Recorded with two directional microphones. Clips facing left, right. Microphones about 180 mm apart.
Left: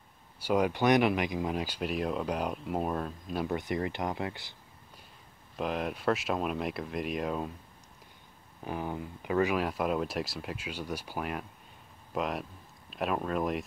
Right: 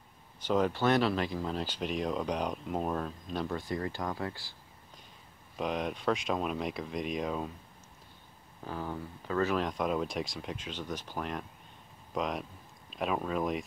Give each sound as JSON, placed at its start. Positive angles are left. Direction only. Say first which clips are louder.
{"t": 0.4, "sound": "speech", "louder": "left 1 dB", "side_deg": 10}
{"t": 3.5, "sound": "speech", "louder": "left 3 dB", "side_deg": 20}
{"t": 5.6, "sound": "speech", "louder": "left 1 dB", "side_deg": 5}
{"t": 8.6, "sound": "speech", "louder": "left 2 dB", "side_deg": 15}